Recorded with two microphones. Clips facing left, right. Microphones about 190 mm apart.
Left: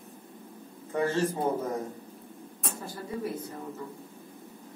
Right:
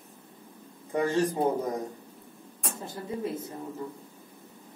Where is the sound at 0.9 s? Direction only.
15° right (ahead or behind).